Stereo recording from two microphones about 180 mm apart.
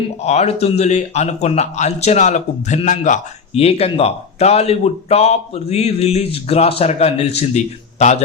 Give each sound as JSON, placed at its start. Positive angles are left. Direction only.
{"t": 0.2, "sound": "speech", "side_deg": 40}